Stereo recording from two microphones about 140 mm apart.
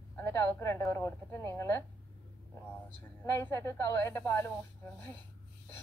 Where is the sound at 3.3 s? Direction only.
20° left (ahead or behind).